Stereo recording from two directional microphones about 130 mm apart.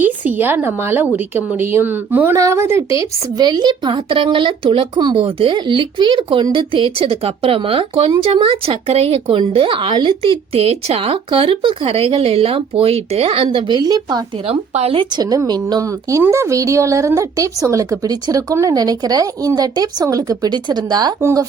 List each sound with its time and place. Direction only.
0.0 s a woman's voice: 15° right (ahead or behind)
3.3 s speech: 35° right (ahead or behind)
14.4 s speech: 55° right (ahead or behind)
15.1 s speech: 30° right (ahead or behind)
21.2 s speech: 20° right (ahead or behind)